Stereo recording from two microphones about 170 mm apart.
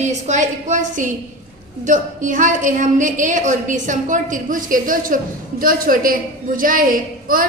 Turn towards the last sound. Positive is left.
turn(degrees=-55)  # may be behind; listen again after turning